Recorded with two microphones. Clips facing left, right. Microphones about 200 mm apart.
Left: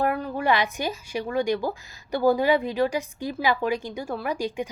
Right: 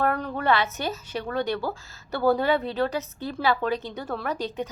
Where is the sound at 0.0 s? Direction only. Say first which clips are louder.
Left 1 dB; 5° left (ahead or behind).